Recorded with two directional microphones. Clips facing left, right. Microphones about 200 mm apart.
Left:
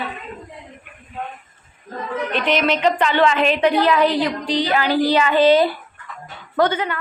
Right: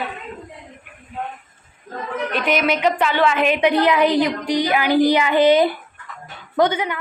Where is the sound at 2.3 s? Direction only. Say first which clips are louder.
Even; 10° right (ahead or behind).